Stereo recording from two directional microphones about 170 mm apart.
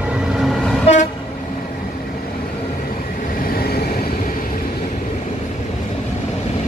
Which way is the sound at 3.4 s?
60° left (ahead or behind).